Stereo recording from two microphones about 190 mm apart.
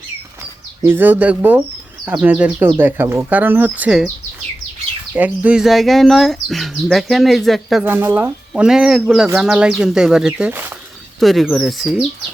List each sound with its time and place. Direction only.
0.9 s speech: 10° right (ahead or behind)
5.1 s speech: 5° right (ahead or behind)
11.2 s speech: centre (ahead or behind)